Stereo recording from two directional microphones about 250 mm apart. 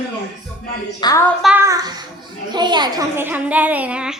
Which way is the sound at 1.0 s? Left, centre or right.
Centre.